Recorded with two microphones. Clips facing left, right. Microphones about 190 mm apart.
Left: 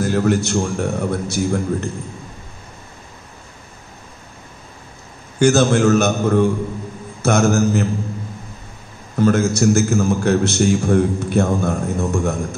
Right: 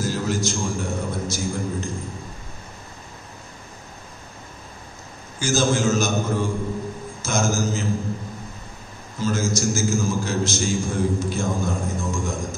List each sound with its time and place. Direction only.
0.0 s a man's voice: 60° left (ahead or behind)
5.4 s a man's voice: 65° left (ahead or behind)
9.1 s a man's voice: 60° left (ahead or behind)